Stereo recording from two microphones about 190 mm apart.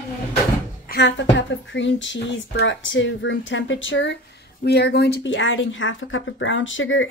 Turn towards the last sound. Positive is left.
turn(degrees=90)